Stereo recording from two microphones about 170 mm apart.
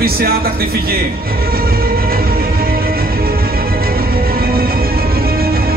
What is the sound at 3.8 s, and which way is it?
Music, 60° right (ahead or behind).